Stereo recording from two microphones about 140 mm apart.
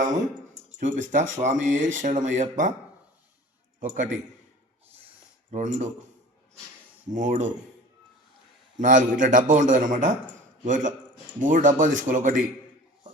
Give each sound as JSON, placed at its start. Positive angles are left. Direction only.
{"t": 0.8, "sound": "speech", "side_deg": -60}
{"t": 3.8, "sound": "speech", "side_deg": -70}
{"t": 5.5, "sound": "speech", "side_deg": -60}
{"t": 7.1, "sound": "speech", "side_deg": -60}
{"t": 8.8, "sound": "speech", "side_deg": -65}